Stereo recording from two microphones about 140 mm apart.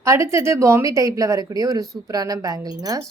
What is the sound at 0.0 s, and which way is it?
Speech, 20° right (ahead or behind).